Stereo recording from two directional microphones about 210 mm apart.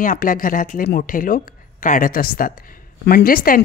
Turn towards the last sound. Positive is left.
turn(degrees=45)  # may be behind; listen again after turning